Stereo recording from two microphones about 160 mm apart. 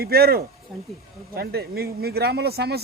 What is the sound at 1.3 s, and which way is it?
Speech, 80° right.